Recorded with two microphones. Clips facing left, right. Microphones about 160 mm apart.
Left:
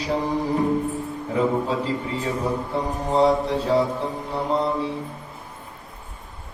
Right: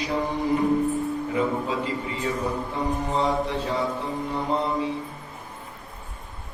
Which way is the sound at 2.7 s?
35° left (ahead or behind).